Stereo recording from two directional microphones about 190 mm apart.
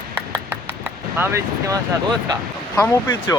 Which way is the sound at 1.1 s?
10° right (ahead or behind).